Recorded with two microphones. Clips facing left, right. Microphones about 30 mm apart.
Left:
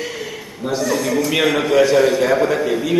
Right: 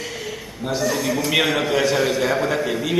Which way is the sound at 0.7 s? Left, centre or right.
Centre.